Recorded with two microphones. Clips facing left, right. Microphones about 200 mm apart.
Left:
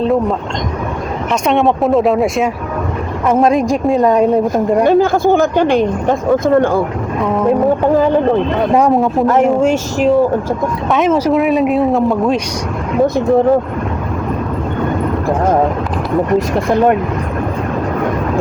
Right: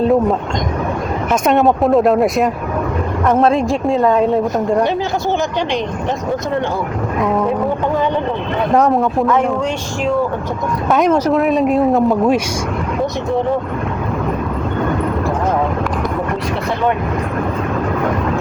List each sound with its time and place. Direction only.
0.0 s speech: 5° right (ahead or behind)
3.9 s speech: 15° left (ahead or behind)
4.9 s speech: 50° left (ahead or behind)
7.2 s speech: centre (ahead or behind)
8.7 s speech: 5° left (ahead or behind)
10.9 s speech: centre (ahead or behind)